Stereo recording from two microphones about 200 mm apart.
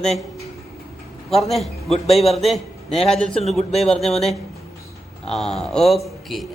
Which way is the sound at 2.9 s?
30° left (ahead or behind).